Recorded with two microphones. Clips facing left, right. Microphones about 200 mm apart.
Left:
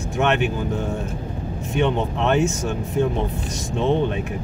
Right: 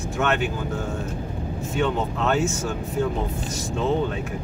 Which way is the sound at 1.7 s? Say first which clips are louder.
Left 3 dB; 20° left (ahead or behind).